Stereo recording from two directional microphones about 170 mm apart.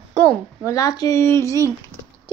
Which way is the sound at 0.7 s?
20° left (ahead or behind).